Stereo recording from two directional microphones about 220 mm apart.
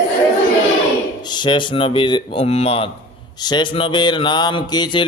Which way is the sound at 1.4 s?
20° left (ahead or behind).